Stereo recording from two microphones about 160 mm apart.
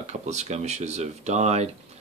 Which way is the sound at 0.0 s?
45° right (ahead or behind).